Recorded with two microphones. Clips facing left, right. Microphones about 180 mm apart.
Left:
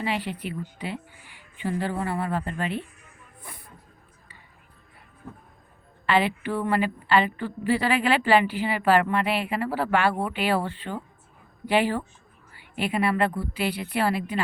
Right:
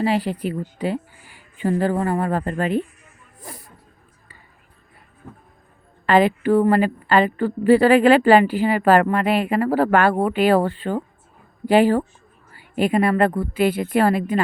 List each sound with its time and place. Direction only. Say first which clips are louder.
0.0 s a woman's voice: right 8 dB; 40° right (ahead or behind)
6.1 s a woman's voice: right 8 dB; 40° right (ahead or behind)